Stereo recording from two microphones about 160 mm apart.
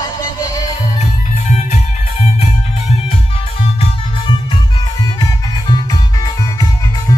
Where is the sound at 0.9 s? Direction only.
40° left (ahead or behind).